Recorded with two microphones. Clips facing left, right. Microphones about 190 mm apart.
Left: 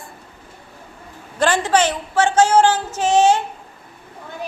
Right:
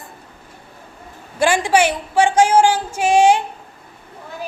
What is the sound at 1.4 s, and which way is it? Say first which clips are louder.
Speech: right 1 dB; 10° right (ahead or behind).